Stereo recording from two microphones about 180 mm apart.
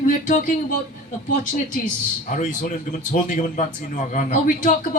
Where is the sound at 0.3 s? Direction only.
45° left (ahead or behind).